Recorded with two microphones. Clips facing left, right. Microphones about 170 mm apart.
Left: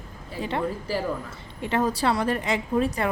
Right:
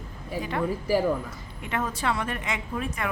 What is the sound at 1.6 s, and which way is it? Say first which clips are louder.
A woman's voice: left 5 dB; 35° left (ahead or behind).